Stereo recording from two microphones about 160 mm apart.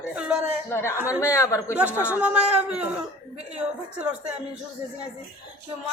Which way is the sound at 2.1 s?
5° right (ahead or behind).